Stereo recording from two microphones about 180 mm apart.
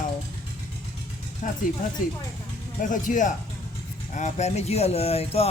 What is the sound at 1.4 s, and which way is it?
Speech, 45° left (ahead or behind).